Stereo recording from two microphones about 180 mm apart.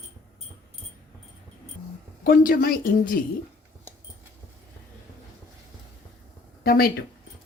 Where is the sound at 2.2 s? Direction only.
50° left (ahead or behind).